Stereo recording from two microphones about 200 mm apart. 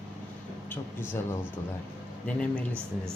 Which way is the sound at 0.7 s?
10° left (ahead or behind).